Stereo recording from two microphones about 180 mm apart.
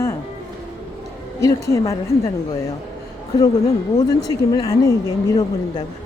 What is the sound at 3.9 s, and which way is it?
Speech, 20° left (ahead or behind).